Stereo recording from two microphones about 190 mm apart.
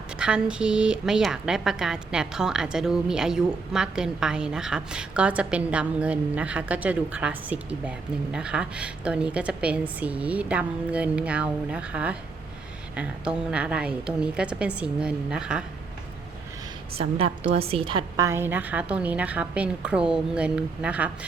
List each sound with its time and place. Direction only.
0.2 s a woman's voice: 5° right (ahead or behind)
16.9 s a woman's voice: 30° right (ahead or behind)
18.3 s a woman's voice: 10° right (ahead or behind)